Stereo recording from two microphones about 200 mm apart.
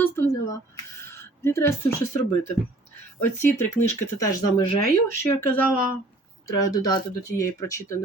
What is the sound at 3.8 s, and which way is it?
Speech, 15° left (ahead or behind).